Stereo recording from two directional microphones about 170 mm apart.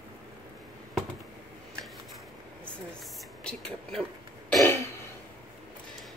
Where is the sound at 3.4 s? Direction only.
5° left (ahead or behind).